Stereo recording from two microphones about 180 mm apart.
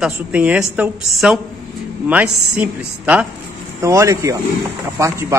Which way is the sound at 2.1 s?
10° right (ahead or behind).